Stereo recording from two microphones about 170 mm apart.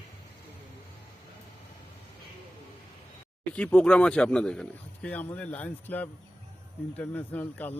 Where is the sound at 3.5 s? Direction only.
5° left (ahead or behind).